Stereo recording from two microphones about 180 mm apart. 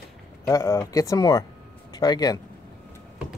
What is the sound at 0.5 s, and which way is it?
Speech, 20° left (ahead or behind).